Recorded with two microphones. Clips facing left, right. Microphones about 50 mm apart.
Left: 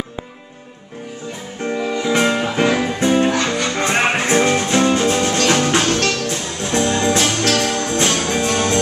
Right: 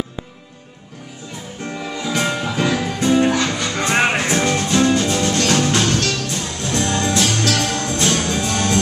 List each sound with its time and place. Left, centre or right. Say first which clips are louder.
1.6 s music: left 6 dB; centre
4.0 s music: left 3 dB; centre; by 6.3 s left
6.3 s music: left 2 dB; centre
7.5 s music: left 2 dB; centre
7.8 s music: left 1 dB; left